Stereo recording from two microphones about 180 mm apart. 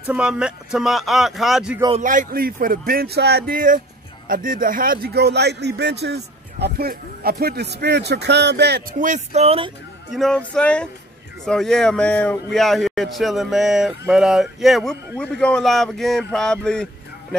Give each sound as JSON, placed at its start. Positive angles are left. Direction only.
{"t": 0.0, "sound": "speech", "side_deg": -5}
{"t": 1.9, "sound": "a man's voice", "side_deg": -45}
{"t": 9.0, "sound": "speech", "side_deg": -40}
{"t": 10.1, "sound": "speech", "side_deg": 5}